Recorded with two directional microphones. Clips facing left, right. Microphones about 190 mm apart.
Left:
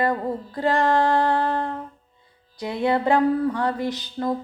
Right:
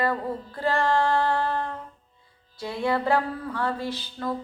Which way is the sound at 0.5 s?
15° left (ahead or behind).